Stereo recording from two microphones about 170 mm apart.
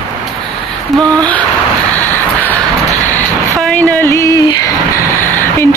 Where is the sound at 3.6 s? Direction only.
10° left (ahead or behind).